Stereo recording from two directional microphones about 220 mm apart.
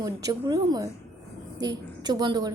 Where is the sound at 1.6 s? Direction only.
20° right (ahead or behind).